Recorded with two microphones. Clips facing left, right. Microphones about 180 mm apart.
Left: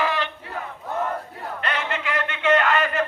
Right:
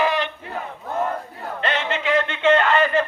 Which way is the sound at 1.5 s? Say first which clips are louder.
Right 4 dB; 25° right (ahead or behind).